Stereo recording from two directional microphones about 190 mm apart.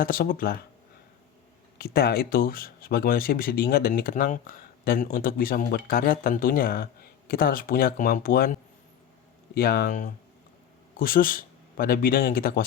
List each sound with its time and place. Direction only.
0.0 s speech: 45° left (ahead or behind)
1.8 s speech: 55° left (ahead or behind)
9.6 s speech: 55° left (ahead or behind)